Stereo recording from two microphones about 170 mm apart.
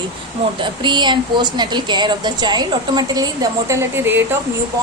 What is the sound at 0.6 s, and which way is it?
A woman's voice, 25° right (ahead or behind).